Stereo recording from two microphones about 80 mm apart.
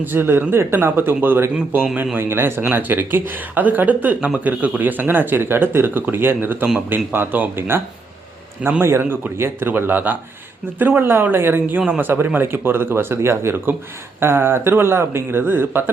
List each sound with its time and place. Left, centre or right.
0.0 s speech: right
8.8 s speech: right